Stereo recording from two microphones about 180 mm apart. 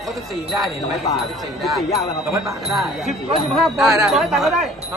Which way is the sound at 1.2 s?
Centre (ahead or behind).